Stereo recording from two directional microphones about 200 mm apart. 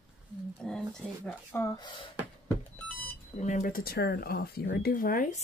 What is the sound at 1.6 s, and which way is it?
Speech, 20° left (ahead or behind).